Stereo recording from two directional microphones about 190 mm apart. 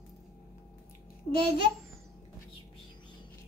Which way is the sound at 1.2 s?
55° left (ahead or behind).